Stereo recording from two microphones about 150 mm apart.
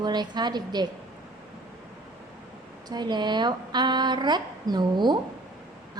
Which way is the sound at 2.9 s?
30° right (ahead or behind).